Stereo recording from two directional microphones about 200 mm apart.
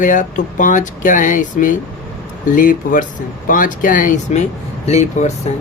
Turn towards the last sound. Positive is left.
turn(degrees=35)  # may be behind; listen again after turning